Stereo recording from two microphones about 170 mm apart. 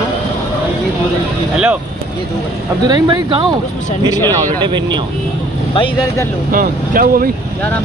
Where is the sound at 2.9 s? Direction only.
25° right (ahead or behind).